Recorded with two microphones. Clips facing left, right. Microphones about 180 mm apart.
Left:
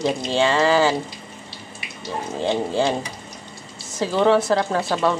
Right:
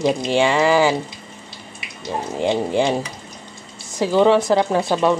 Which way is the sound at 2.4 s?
15° right (ahead or behind).